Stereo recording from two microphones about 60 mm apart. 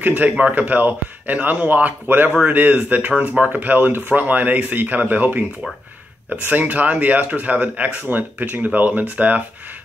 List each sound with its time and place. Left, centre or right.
0.0 s speech: right